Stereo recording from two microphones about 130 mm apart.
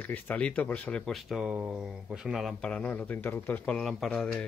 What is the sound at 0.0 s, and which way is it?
Speech, 10° left (ahead or behind).